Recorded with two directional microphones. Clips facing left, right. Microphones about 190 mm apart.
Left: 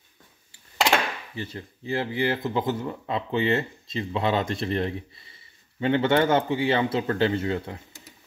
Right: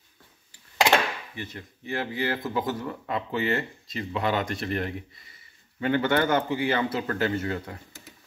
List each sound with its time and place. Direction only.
1.3 s speech: 30° left (ahead or behind)